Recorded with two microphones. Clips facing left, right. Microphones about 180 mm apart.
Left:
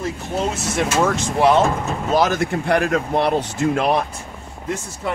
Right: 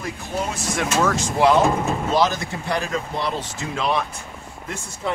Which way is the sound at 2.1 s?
50° left (ahead or behind).